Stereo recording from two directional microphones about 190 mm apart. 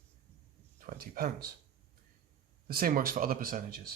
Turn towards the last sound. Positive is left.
turn(degrees=-50)  # may be behind; listen again after turning